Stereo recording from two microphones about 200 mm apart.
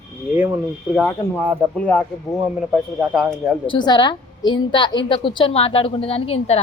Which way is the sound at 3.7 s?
20° left (ahead or behind).